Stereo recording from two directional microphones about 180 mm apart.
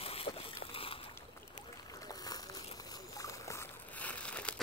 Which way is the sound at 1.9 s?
20° left (ahead or behind).